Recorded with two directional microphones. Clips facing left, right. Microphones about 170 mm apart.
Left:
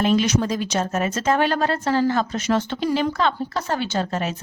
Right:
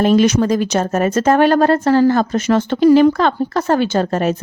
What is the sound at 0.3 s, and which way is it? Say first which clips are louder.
A woman's voice: right 7 dB; 55° right (ahead or behind).